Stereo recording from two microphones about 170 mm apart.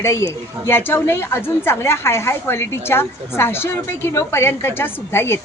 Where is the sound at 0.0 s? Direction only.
15° left (ahead or behind).